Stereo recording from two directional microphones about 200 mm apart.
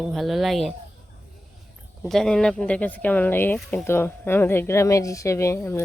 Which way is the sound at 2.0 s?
Centre (ahead or behind).